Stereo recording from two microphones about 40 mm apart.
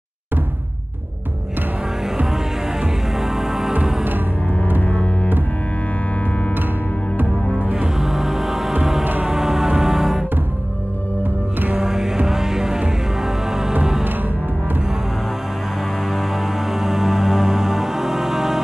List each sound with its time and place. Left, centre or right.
3.2 s music: centre
4.8 s music: left
7.2 s music: right
8.0 s music: centre
11.8 s music: centre
16.1 s music: centre